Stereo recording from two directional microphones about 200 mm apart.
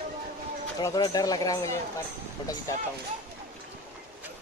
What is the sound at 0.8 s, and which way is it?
Speech, 20° left (ahead or behind).